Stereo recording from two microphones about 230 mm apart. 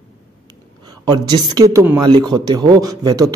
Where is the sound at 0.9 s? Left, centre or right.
Centre.